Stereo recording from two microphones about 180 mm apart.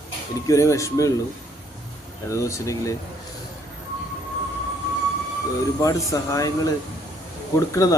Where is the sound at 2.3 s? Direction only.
15° left (ahead or behind).